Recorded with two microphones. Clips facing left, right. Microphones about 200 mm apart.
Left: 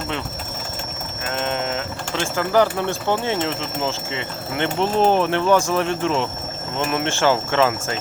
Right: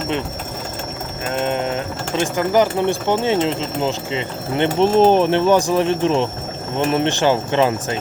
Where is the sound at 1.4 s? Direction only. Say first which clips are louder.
Right 4 dB; 15° right (ahead or behind).